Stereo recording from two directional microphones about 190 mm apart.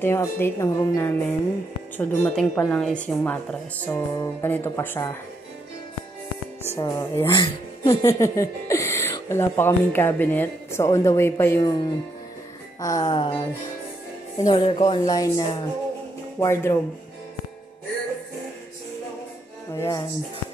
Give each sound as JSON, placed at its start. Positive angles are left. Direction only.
{"t": 0.0, "sound": "a woman's voice", "side_deg": 10}
{"t": 6.8, "sound": "speech", "side_deg": 15}
{"t": 12.8, "sound": "speech", "side_deg": 20}
{"t": 14.4, "sound": "a woman's voice", "side_deg": 25}
{"t": 19.7, "sound": "a woman's voice", "side_deg": 15}